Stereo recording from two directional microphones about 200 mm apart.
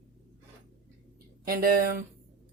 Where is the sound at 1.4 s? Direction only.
45° right (ahead or behind).